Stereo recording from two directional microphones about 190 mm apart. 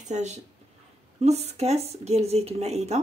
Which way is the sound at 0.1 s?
35° right (ahead or behind).